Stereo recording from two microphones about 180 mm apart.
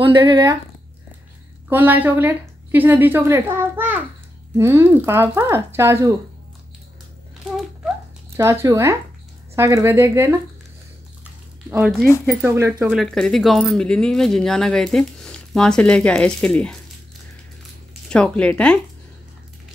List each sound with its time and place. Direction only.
0.0 s speech: 25° right (ahead or behind)
1.7 s a woman's voice: 10° right (ahead or behind)
8.4 s a woman's voice: 15° right (ahead or behind)
11.7 s a woman's voice: 5° right (ahead or behind)
12.9 s speech: centre (ahead or behind)
18.1 s speech: 5° left (ahead or behind)